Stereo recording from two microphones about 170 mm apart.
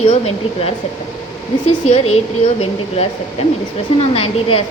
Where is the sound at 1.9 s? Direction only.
35° left (ahead or behind).